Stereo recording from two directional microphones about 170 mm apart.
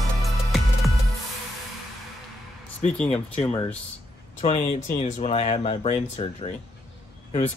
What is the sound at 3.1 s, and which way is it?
Speech, 40° left (ahead or behind).